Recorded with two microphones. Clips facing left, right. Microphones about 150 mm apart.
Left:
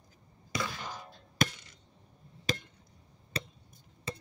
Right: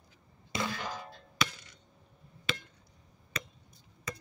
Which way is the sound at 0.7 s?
90° right.